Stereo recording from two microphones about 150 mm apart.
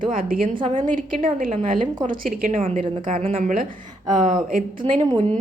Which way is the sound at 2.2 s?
65° right (ahead or behind).